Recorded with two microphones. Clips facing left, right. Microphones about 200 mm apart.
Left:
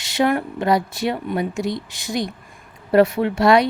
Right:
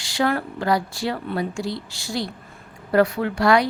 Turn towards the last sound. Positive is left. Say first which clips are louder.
# left 3 dB
turn(degrees=25)  # may be behind; listen again after turning